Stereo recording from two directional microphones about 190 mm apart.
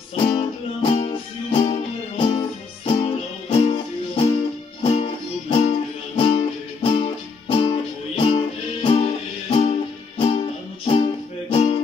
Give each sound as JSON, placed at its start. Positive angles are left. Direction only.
{"t": 0.1, "sound": "music", "side_deg": 25}
{"t": 11.5, "sound": "music", "side_deg": 30}